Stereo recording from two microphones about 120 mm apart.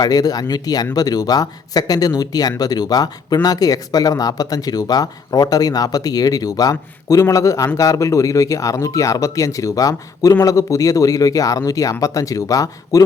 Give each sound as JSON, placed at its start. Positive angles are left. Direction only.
{"t": 0.0, "sound": "speech", "side_deg": 30}